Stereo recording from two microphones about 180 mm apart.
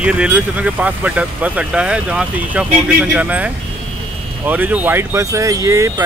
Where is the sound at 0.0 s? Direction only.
5° right (ahead or behind).